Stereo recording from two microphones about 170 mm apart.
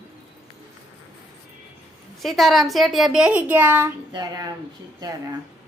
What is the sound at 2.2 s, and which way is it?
A woman's voice, centre (ahead or behind).